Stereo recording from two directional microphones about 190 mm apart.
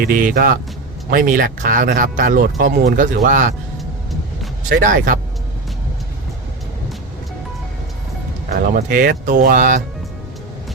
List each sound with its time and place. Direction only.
0.0 s speech: 50° right (ahead or behind)
4.7 s speech: 45° right (ahead or behind)
8.5 s speech: 45° right (ahead or behind)